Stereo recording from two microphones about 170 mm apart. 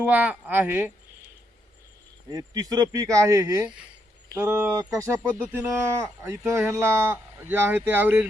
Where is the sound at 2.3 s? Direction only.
20° right (ahead or behind).